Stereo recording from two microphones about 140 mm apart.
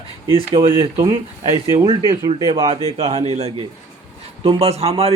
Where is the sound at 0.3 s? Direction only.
40° right (ahead or behind).